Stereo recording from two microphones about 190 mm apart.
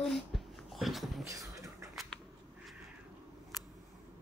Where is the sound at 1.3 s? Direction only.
15° right (ahead or behind).